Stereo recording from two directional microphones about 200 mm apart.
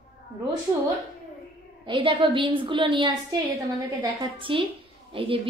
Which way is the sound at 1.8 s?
25° right (ahead or behind).